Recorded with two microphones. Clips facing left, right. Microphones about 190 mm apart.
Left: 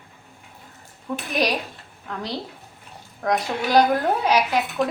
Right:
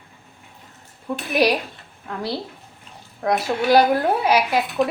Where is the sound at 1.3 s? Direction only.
10° right (ahead or behind).